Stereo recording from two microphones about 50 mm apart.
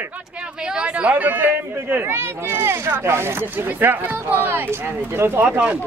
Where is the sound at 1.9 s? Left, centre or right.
Right.